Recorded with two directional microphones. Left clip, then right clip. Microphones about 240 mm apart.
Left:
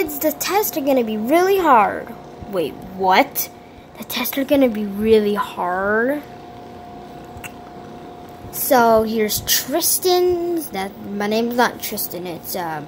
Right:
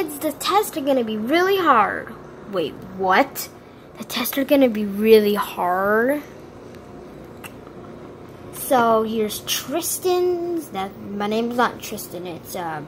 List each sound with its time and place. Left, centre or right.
0.0 s a woman's voice: centre
8.7 s a woman's voice: centre